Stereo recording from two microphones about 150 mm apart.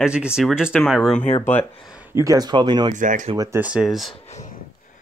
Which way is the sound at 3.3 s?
25° right (ahead or behind).